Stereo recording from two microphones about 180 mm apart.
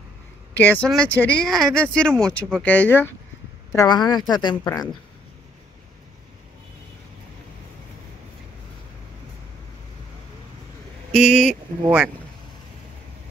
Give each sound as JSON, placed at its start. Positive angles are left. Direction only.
{"t": 0.6, "sound": "speech", "side_deg": 10}
{"t": 3.7, "sound": "speech", "side_deg": 20}
{"t": 11.1, "sound": "speech", "side_deg": -5}